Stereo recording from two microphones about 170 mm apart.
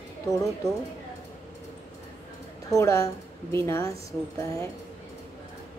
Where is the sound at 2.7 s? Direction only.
15° left (ahead or behind).